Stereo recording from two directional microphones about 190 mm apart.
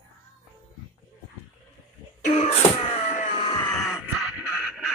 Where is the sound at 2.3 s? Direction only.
35° left (ahead or behind).